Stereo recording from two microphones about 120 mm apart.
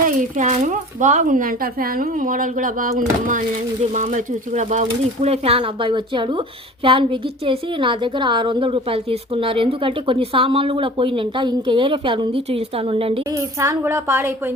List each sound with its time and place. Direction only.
0.2 s speech: 85° right
5.2 s a woman's voice: 55° right (ahead or behind)
13.3 s a child's voice: 25° right (ahead or behind)